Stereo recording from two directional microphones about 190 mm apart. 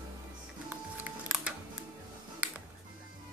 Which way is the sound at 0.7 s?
10° right (ahead or behind).